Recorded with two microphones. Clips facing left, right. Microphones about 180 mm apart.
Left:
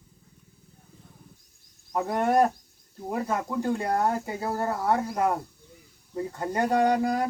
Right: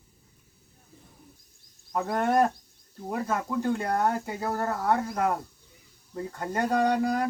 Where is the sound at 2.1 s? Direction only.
10° left (ahead or behind).